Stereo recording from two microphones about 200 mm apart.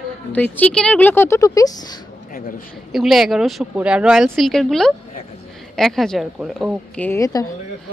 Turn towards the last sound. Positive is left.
turn(degrees=15)  # may be behind; listen again after turning